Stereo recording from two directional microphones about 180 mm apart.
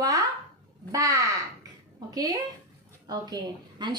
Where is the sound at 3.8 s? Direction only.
25° right (ahead or behind).